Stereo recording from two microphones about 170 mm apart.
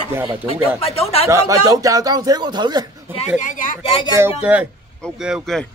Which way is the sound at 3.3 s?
50° left (ahead or behind).